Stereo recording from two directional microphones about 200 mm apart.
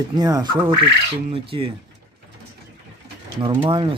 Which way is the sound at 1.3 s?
25° right (ahead or behind).